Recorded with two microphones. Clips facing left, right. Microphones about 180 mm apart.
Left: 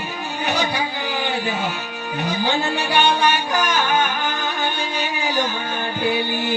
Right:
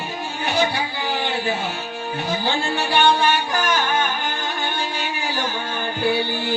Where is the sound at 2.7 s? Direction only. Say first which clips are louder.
Right 1 dB; 15° left (ahead or behind).